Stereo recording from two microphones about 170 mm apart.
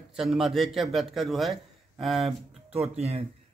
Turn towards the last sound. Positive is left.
turn(degrees=-35)  # may be behind; listen again after turning